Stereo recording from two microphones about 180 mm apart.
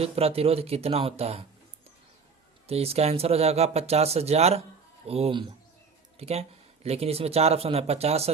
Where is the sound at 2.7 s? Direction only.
35° right (ahead or behind).